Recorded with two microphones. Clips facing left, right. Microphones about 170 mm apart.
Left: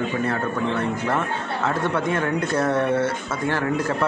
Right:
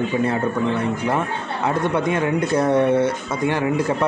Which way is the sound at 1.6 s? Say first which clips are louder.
Right 3 dB; 15° right (ahead or behind).